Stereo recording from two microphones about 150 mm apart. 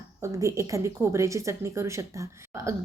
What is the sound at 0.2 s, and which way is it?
A woman's voice, 20° right (ahead or behind).